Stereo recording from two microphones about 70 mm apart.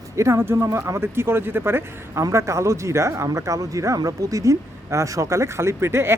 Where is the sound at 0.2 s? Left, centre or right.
Right.